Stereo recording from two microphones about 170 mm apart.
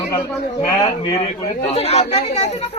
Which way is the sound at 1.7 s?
40° left (ahead or behind).